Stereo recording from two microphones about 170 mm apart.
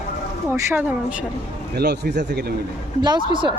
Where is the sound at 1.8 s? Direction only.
75° right (ahead or behind).